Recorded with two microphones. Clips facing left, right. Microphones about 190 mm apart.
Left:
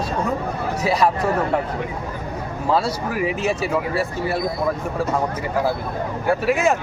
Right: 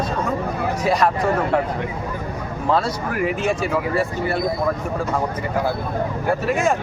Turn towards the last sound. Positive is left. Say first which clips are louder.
# left 1 dB
turn(degrees=5)  # may be behind; listen again after turning